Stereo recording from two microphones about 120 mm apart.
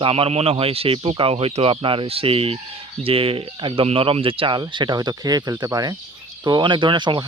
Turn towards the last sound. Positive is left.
turn(degrees=-40)  # may be behind; listen again after turning